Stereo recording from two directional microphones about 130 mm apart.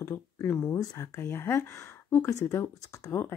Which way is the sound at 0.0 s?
15° left (ahead or behind).